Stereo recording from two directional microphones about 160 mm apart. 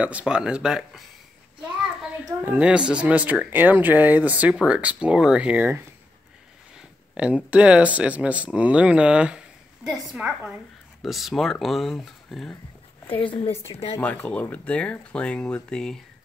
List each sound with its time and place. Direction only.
0.0 s speech: 5° right (ahead or behind)
2.4 s speech: 10° right (ahead or behind)
6.8 s speech: 5° right (ahead or behind)
13.2 s a woman's voice: 35° left (ahead or behind)
13.9 s speech: 10° left (ahead or behind)